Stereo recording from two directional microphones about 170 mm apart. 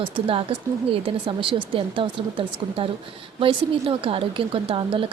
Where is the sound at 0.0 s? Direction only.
30° right (ahead or behind).